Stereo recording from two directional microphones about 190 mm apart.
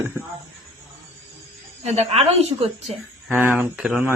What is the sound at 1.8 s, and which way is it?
Speech, 35° right (ahead or behind).